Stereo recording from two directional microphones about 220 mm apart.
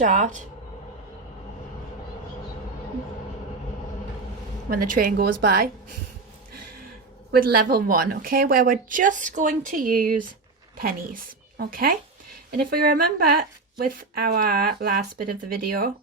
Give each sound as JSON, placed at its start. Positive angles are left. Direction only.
{"t": 0.0, "sound": "speech", "side_deg": -35}
{"t": 4.7, "sound": "a woman's voice", "side_deg": -40}
{"t": 7.3, "sound": "a woman's voice", "side_deg": -40}